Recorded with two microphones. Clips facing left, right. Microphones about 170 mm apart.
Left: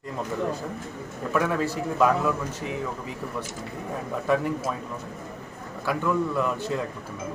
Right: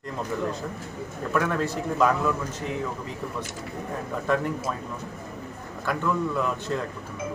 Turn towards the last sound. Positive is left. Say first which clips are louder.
# left 1 dB
turn(degrees=5)  # may be behind; listen again after turning